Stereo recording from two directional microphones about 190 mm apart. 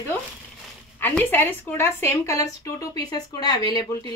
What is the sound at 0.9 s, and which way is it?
A woman's voice, 10° left (ahead or behind).